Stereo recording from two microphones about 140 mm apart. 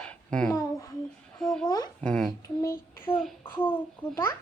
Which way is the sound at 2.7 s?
90° left.